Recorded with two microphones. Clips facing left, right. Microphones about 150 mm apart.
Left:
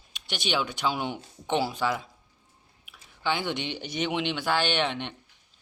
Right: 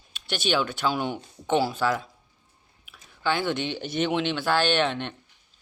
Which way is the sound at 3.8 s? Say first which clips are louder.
Right 5 dB; 50° right (ahead or behind).